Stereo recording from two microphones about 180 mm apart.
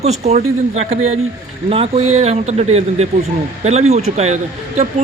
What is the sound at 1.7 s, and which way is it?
Speech, 35° right (ahead or behind).